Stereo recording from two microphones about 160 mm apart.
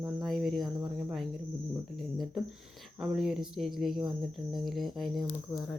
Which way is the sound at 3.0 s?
5° right (ahead or behind).